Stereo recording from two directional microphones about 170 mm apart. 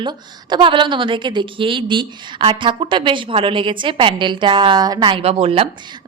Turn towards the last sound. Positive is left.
turn(degrees=-35)  # may be behind; listen again after turning